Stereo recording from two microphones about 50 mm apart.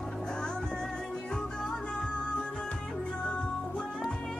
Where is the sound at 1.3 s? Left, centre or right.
Centre.